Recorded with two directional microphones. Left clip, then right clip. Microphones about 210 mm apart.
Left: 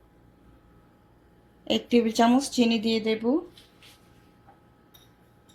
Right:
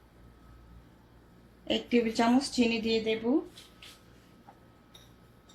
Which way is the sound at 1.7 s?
35° left (ahead or behind).